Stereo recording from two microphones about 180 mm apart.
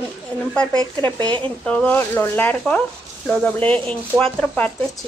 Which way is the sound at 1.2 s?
25° right (ahead or behind).